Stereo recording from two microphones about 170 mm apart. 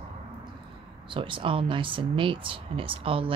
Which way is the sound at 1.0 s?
30° right (ahead or behind).